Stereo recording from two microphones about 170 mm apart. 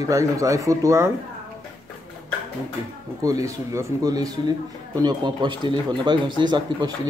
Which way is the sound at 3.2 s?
20° right (ahead or behind).